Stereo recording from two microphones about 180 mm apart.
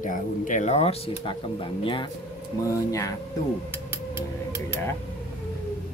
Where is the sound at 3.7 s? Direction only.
10° right (ahead or behind).